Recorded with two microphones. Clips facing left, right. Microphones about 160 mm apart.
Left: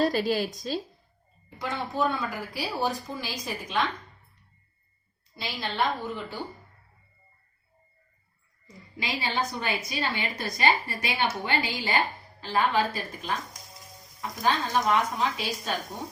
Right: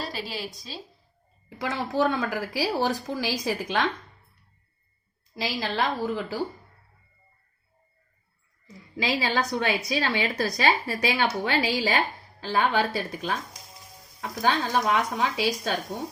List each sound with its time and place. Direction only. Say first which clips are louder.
0.0 s a woman's voice: left 9 dB; 50° left (ahead or behind)
1.5 s a woman's voice: right 3 dB; 90° right
5.4 s a woman's voice: right 2 dB; 90° right
9.0 s a woman's voice: right 4 dB; 90° right
14.9 s a woman's voice: right 1 dB; 75° right (ahead or behind)